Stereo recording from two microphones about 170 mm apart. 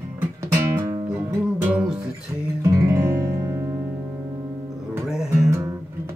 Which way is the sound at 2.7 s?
15° right (ahead or behind).